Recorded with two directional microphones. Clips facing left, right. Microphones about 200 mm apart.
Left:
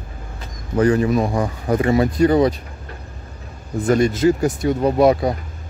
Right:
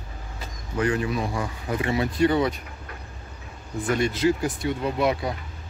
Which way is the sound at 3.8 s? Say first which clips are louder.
Left 7 dB; 40° left (ahead or behind).